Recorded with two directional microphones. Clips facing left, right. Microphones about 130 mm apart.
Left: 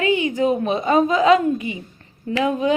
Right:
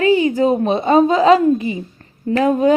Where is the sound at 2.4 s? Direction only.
45° right (ahead or behind).